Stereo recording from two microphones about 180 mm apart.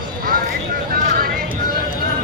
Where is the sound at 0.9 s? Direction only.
55° right (ahead or behind).